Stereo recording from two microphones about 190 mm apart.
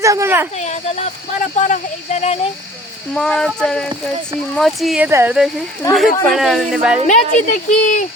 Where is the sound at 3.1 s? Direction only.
5° left (ahead or behind).